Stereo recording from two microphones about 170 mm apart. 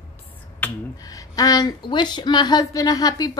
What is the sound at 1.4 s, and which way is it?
Speech, 20° left (ahead or behind).